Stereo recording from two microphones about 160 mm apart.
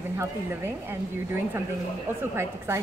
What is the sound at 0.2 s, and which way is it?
A woman's voice, 15° right (ahead or behind).